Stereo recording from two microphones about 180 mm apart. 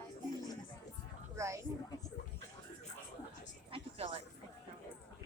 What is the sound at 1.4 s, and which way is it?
Speech, 15° right (ahead or behind).